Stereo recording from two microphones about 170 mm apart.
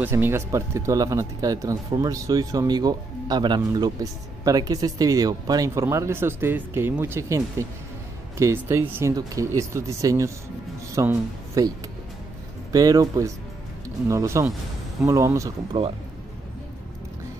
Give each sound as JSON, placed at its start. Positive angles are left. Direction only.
{"t": 0.0, "sound": "speech", "side_deg": -15}
{"t": 12.7, "sound": "speech", "side_deg": -20}